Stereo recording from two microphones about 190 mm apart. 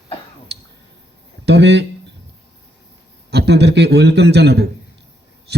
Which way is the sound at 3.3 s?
60° right (ahead or behind).